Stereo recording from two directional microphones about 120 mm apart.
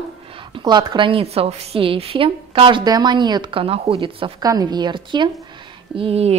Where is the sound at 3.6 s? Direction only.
55° right (ahead or behind).